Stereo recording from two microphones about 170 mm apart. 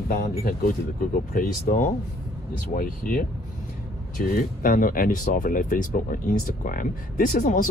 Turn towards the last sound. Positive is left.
turn(degrees=50)  # may be behind; listen again after turning